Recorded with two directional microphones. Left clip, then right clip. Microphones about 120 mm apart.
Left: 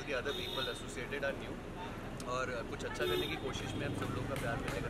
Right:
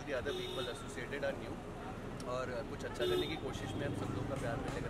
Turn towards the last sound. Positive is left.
turn(degrees=0)  # may be behind; listen again after turning